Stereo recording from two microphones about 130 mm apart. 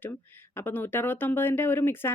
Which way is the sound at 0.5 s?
15° left (ahead or behind).